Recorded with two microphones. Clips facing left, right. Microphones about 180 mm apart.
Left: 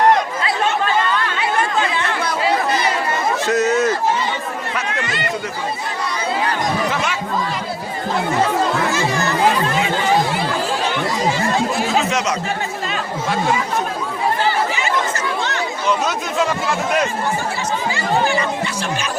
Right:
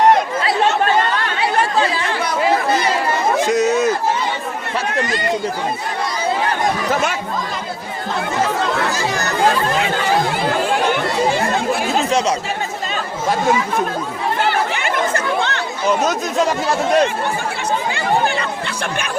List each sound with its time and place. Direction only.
1.4 s chatter: 35° right (ahead or behind)
3.3 s a sound: 15° right (ahead or behind)
6.9 s chatter: 45° right (ahead or behind)
8.9 s chatter: 40° right (ahead or behind)
10.7 s chatter: 55° right (ahead or behind)
14.4 s chatter: 60° right (ahead or behind); by 17.1 s 35° right (ahead or behind)
17.9 s speech: 60° right (ahead or behind)